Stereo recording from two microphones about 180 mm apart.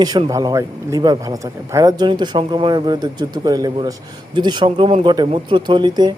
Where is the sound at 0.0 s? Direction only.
20° right (ahead or behind).